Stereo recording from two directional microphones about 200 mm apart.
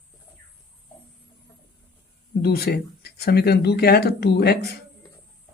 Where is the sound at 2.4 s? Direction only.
50° left (ahead or behind).